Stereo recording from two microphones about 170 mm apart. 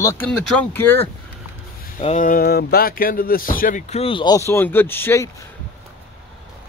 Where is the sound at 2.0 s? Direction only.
45° left (ahead or behind).